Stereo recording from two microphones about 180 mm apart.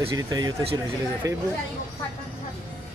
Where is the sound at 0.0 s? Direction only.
20° right (ahead or behind).